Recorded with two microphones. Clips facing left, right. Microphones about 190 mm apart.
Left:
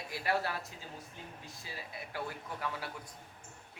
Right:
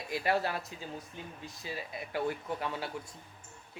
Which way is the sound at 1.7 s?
20° right (ahead or behind).